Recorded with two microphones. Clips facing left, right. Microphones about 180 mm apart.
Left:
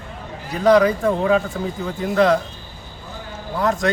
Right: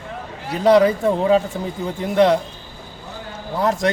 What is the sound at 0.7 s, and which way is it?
A man's voice, 30° right (ahead or behind).